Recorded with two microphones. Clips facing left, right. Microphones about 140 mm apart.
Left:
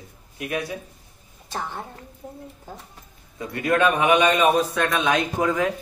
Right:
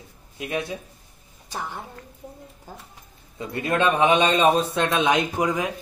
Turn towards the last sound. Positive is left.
turn(degrees=-15)  # may be behind; listen again after turning